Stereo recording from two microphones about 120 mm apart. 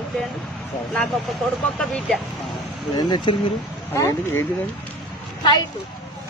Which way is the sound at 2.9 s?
40° left (ahead or behind).